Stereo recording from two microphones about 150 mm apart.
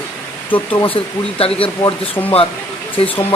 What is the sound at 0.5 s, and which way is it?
Speech, 35° left (ahead or behind).